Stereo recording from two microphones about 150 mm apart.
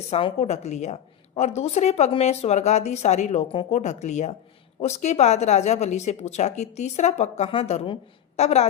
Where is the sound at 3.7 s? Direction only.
50° left (ahead or behind).